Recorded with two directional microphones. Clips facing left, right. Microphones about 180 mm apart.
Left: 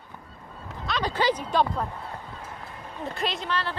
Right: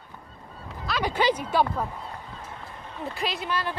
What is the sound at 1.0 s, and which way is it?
Speech, 10° right (ahead or behind).